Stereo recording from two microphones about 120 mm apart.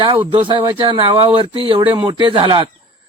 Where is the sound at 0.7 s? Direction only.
45° right (ahead or behind).